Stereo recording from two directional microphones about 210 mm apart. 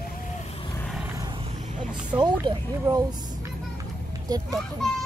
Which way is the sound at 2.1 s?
20° right (ahead or behind).